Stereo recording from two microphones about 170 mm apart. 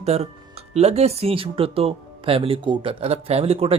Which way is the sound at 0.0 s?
40° right (ahead or behind).